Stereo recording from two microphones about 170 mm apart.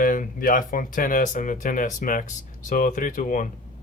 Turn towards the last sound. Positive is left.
turn(degrees=50)  # may be behind; listen again after turning